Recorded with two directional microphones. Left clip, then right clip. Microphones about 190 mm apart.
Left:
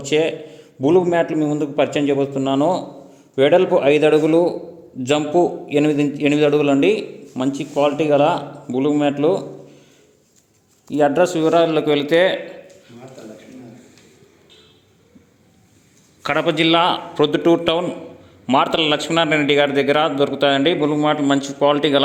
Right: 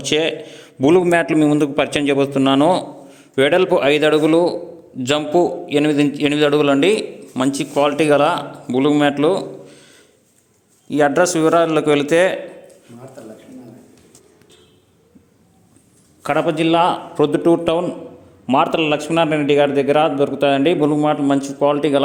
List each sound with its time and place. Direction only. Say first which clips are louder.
0.0 s a man's voice: even; 5° right (ahead or behind)
10.8 s a man's voice: right 1 dB; centre (ahead or behind)
16.2 s a man's voice: even; 5° right (ahead or behind)
20.7 s a man's voice: right 2 dB; 25° right (ahead or behind)
21.0 s a man's voice: right 1 dB; 10° right (ahead or behind)